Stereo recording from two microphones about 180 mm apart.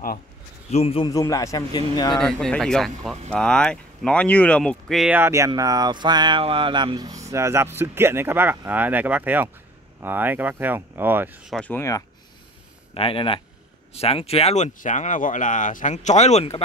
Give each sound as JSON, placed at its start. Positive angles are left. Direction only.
{"t": 0.7, "sound": "speech", "side_deg": 35}
{"t": 1.0, "sound": "a man's voice", "side_deg": 20}
{"t": 2.1, "sound": "speech", "side_deg": 5}
{"t": 11.5, "sound": "a man's voice", "side_deg": 10}
{"t": 12.9, "sound": "speech", "side_deg": 30}